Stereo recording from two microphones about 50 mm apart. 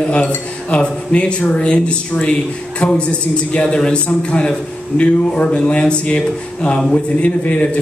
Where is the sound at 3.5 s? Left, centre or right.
Centre.